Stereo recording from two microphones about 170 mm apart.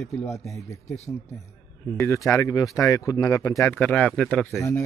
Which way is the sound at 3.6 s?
10° left (ahead or behind).